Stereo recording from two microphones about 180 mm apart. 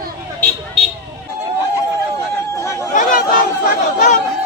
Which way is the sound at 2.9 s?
50° left (ahead or behind).